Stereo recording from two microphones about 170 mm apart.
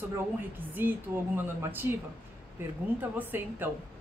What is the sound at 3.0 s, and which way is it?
Speech, 10° right (ahead or behind).